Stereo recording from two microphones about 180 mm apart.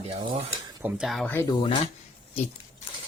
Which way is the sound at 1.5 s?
30° left (ahead or behind).